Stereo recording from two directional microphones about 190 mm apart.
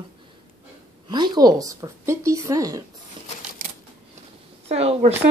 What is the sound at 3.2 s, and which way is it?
Typewriter, 25° right (ahead or behind).